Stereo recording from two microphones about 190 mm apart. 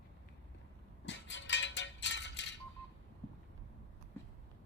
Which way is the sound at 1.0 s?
70° left (ahead or behind).